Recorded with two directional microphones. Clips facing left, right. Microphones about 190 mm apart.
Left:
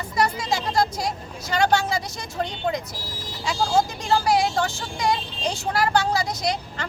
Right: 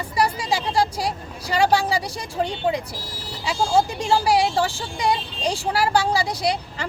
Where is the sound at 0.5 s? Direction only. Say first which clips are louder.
Right 1 dB; 10° right (ahead or behind).